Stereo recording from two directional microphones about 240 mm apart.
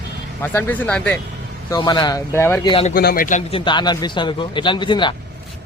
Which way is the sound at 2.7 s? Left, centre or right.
Left.